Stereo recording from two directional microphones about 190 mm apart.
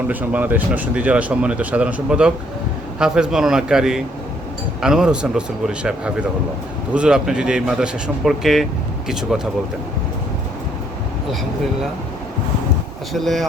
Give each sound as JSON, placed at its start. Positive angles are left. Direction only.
{"t": 0.1, "sound": "speech", "side_deg": -10}
{"t": 13.1, "sound": "speech", "side_deg": 0}